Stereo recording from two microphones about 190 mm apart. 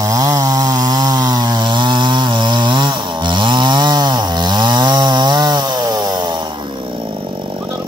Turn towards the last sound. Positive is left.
turn(degrees=-20)  # may be behind; listen again after turning